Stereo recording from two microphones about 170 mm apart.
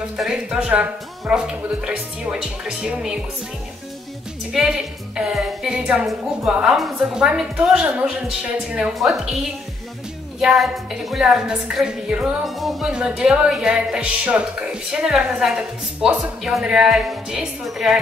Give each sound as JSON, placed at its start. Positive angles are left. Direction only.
{"t": 0.2, "sound": "a woman's voice", "side_deg": -5}
{"t": 5.1, "sound": "a woman's voice", "side_deg": -5}
{"t": 10.4, "sound": "a woman's voice", "side_deg": 0}